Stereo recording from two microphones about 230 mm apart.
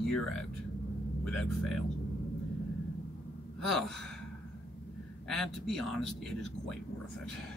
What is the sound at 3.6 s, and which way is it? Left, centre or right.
Speech, centre.